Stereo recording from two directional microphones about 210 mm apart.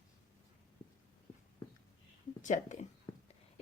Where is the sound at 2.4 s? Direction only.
35° left (ahead or behind).